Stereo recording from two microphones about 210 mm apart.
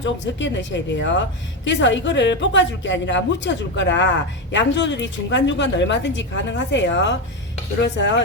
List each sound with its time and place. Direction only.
0.0 s a woman's voice: 60° left (ahead or behind)